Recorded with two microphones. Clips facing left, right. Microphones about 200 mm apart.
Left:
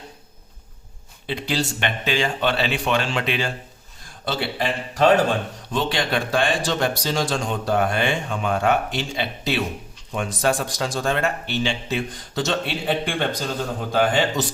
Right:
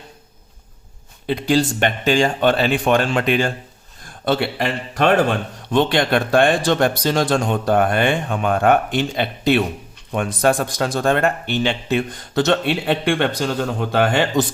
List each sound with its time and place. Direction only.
1.3 s speech: 50° right (ahead or behind); by 14.4 s 65° right (ahead or behind)